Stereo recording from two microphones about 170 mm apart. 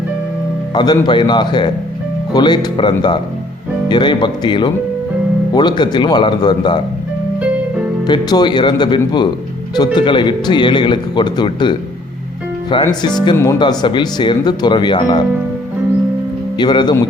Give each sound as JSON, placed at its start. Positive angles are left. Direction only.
{"t": 0.7, "sound": "speech", "side_deg": 25}
{"t": 8.0, "sound": "speech", "side_deg": 25}
{"t": 16.6, "sound": "speech", "side_deg": 25}